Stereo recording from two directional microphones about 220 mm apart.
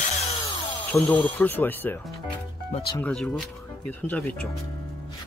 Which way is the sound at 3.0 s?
Centre (ahead or behind).